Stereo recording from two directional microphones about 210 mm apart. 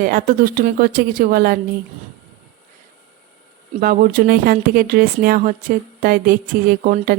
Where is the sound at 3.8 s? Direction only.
45° right (ahead or behind).